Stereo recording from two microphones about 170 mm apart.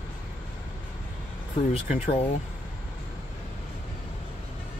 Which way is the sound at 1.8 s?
35° left (ahead or behind).